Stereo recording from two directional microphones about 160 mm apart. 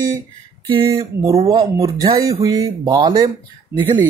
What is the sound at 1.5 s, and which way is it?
Speech, 25° right (ahead or behind).